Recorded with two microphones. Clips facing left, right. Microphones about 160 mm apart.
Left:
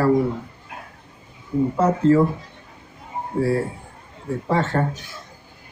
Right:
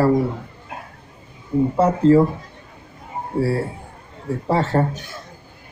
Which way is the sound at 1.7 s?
30° right (ahead or behind).